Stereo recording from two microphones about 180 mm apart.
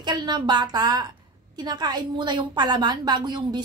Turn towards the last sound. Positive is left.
turn(degrees=-25)  # may be behind; listen again after turning